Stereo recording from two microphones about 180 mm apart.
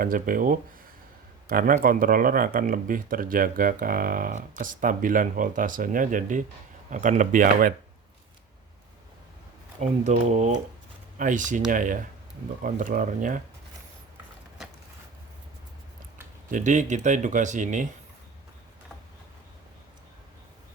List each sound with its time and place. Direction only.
0.0 s speech: 50° right (ahead or behind)
9.8 s speech: 40° right (ahead or behind)
16.5 s speech: 45° right (ahead or behind)